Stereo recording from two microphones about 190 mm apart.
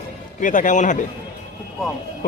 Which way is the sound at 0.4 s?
45° left (ahead or behind).